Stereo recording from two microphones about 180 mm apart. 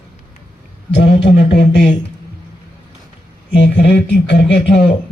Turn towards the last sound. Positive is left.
turn(degrees=70)  # may be behind; listen again after turning